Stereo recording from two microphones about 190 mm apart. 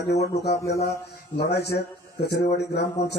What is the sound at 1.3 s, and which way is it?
Speech, 60° left (ahead or behind).